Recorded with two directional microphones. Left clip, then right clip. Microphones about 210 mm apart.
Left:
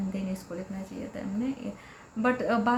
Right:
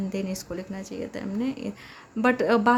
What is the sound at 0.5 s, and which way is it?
A woman's voice, 55° right (ahead or behind).